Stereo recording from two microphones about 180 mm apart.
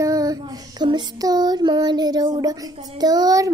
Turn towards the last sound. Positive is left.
turn(degrees=-20)  # may be behind; listen again after turning